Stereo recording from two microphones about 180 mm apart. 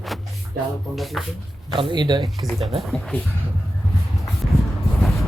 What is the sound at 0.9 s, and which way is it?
Speech, centre (ahead or behind).